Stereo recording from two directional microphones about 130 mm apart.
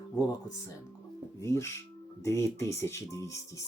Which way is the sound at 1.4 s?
20° left (ahead or behind).